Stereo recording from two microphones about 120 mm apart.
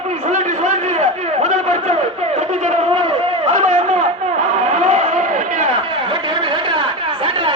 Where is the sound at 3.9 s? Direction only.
75° right (ahead or behind).